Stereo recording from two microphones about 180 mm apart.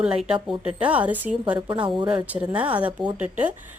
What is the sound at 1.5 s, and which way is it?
Speech, 25° right (ahead or behind).